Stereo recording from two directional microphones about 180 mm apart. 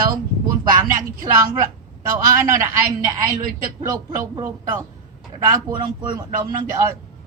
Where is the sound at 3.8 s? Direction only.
20° right (ahead or behind).